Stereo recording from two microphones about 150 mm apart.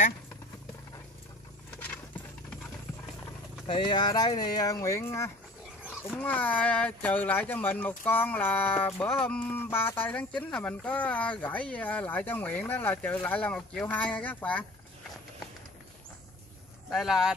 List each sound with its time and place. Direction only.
3.6 s speech: 30° left (ahead or behind); by 14.7 s 10° left (ahead or behind)
16.9 s speech: centre (ahead or behind)